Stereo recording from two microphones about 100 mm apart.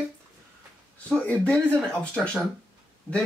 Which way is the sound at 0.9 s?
10° left (ahead or behind).